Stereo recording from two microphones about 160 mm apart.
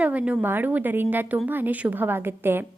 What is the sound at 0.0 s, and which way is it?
A woman's voice, 10° right (ahead or behind).